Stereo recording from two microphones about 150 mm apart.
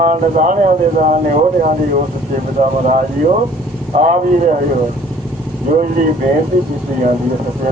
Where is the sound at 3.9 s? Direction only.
55° right (ahead or behind).